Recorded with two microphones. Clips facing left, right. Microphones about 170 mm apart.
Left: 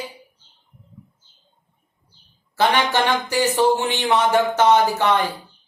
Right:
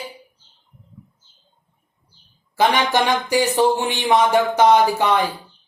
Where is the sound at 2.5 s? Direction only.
15° right (ahead or behind).